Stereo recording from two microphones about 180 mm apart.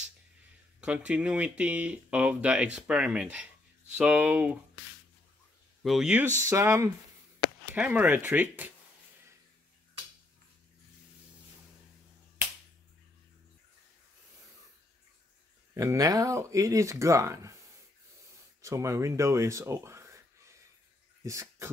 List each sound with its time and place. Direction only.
0.7 s speech: 5° right (ahead or behind)
5.8 s speech: centre (ahead or behind)
15.7 s speech: 15° right (ahead or behind)
18.6 s speech: 15° right (ahead or behind)
21.2 s a sound: 15° right (ahead or behind)